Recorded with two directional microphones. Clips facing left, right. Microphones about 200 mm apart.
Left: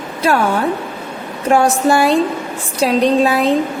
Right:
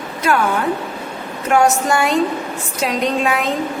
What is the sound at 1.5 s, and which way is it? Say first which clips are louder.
A woman's voice: left 2 dB; 30° left (ahead or behind).